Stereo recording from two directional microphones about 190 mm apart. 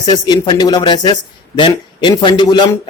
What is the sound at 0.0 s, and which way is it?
Speech, 20° left (ahead or behind).